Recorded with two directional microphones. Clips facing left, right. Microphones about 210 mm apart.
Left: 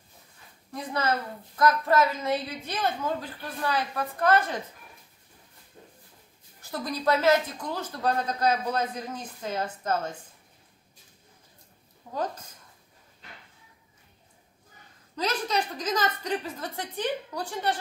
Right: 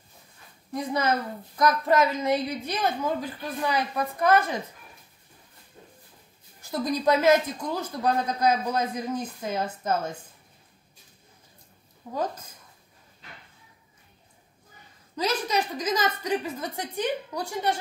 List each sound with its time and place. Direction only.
0.7 s a woman's voice: 15° right (ahead or behind)
6.7 s a woman's voice: 15° right (ahead or behind)
15.1 s a woman's voice: 10° right (ahead or behind)